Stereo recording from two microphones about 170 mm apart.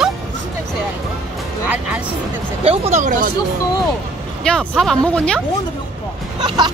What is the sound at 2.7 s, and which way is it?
Speech, 45° right (ahead or behind).